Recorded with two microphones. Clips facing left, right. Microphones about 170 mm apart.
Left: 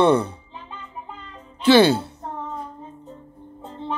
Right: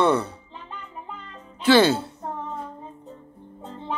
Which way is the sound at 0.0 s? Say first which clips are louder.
Left 4 dB; 15° left (ahead or behind).